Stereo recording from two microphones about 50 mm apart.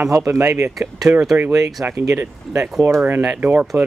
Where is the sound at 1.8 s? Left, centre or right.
Right.